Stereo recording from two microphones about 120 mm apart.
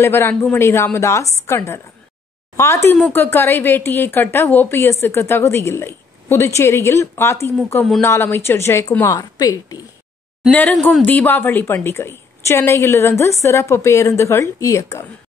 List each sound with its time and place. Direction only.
0.0 s a woman's voice: 20° left (ahead or behind)
10.5 s a woman's voice: 15° left (ahead or behind)